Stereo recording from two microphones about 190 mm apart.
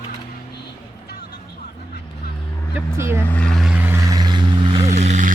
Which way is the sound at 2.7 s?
10° right (ahead or behind).